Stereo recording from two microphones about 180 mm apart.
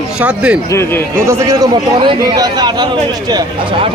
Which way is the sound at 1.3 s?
15° right (ahead or behind).